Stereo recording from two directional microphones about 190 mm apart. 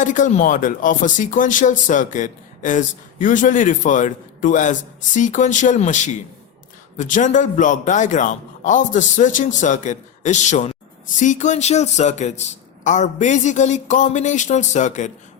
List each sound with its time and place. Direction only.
0.0 s speech: 40° left (ahead or behind)